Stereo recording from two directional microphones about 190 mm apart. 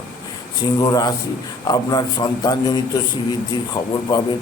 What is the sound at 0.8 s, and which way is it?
A man's voice, 20° left (ahead or behind).